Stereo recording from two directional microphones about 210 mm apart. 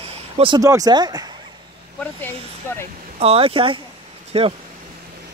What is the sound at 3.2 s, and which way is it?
Speech, 30° right (ahead or behind).